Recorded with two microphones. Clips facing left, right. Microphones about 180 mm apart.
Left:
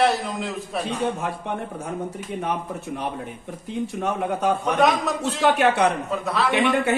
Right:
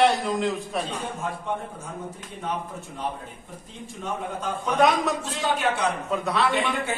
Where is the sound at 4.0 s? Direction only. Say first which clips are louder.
Left 5 dB; 70° left (ahead or behind).